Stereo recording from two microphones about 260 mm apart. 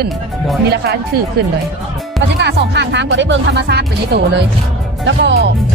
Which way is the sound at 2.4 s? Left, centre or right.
Right.